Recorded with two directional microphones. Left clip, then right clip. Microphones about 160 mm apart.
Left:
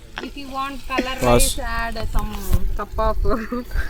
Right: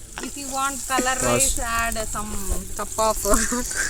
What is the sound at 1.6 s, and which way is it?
Speech, 20° right (ahead or behind).